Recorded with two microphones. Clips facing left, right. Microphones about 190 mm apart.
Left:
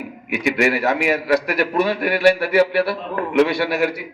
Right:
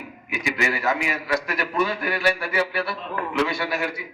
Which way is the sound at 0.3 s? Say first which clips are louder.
Left 7 dB; 65° left (ahead or behind).